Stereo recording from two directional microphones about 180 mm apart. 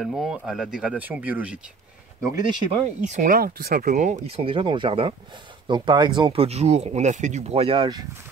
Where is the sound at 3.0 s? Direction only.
45° right (ahead or behind); by 8.0 s 25° right (ahead or behind).